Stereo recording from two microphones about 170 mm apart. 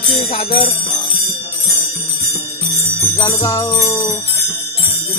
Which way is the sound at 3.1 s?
20° left (ahead or behind).